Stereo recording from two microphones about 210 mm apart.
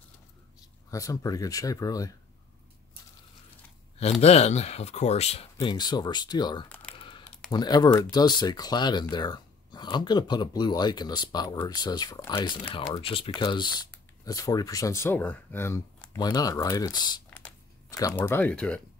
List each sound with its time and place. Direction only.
0.8 s speech: 15° left (ahead or behind)
4.0 s speech: 30° left (ahead or behind)
6.7 s typing: 5° left (ahead or behind)
7.0 s typing: 25° left (ahead or behind)
7.5 s speech: 20° left (ahead or behind)
17.3 s a sound: 5° left (ahead or behind)
17.9 s speech: 15° left (ahead or behind)